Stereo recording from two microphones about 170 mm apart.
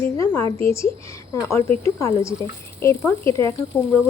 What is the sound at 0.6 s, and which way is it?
Speech, 15° left (ahead or behind).